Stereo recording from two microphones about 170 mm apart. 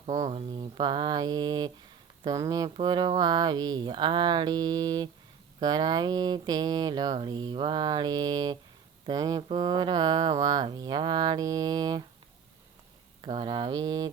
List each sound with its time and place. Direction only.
0.3 s speech: 30° right (ahead or behind)
13.2 s speech: 30° right (ahead or behind)